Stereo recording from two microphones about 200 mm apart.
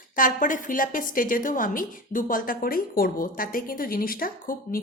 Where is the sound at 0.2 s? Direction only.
40° left (ahead or behind).